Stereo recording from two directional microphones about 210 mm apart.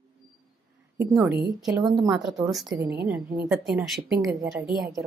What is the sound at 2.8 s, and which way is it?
Speech, 50° right (ahead or behind).